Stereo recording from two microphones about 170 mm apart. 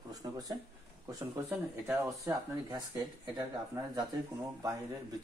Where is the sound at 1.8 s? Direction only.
20° right (ahead or behind).